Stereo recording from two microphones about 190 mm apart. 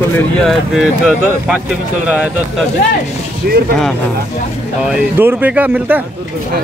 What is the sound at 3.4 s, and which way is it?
Speech, 60° right (ahead or behind).